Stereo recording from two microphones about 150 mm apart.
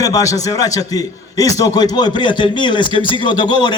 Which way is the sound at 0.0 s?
25° left (ahead or behind).